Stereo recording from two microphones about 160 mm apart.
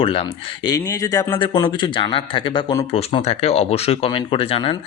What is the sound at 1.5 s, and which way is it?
Speech, 30° left (ahead or behind).